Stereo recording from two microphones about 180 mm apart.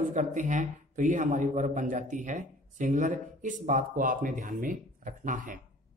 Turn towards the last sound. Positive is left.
turn(degrees=-45)  # may be behind; listen again after turning